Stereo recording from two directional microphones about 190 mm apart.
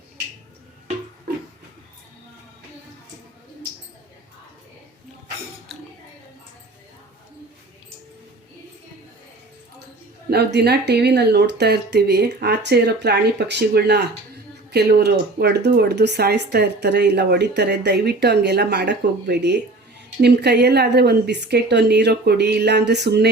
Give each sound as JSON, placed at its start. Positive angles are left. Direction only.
{"t": 10.2, "sound": "speech", "side_deg": -60}